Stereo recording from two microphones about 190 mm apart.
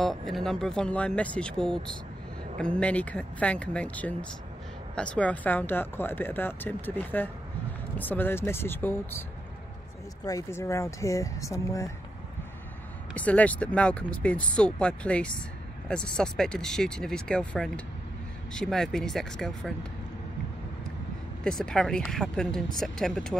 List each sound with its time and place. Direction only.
0.0 s speech: centre (ahead or behind)
10.2 s speech: 15° left (ahead or behind)
13.1 s speech: 5° left (ahead or behind)
21.5 s speech: 5° left (ahead or behind)